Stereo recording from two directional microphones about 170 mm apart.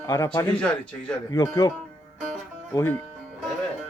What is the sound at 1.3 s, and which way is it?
Speech, 20° left (ahead or behind).